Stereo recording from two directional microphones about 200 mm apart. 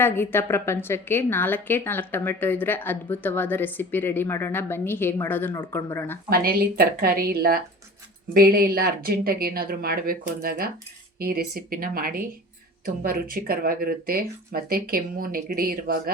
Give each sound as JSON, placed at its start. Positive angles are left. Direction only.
{"t": 0.0, "sound": "a woman's voice", "side_deg": 10}
{"t": 6.3, "sound": "speech", "side_deg": -45}